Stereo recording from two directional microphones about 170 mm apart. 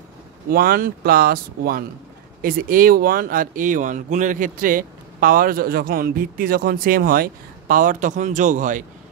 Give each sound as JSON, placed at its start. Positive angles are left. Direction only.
{"t": 0.5, "sound": "speech", "side_deg": -60}